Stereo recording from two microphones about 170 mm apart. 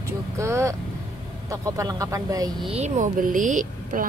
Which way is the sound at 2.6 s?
40° right (ahead or behind).